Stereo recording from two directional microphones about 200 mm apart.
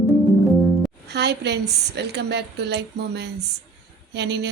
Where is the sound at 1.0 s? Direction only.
55° right (ahead or behind).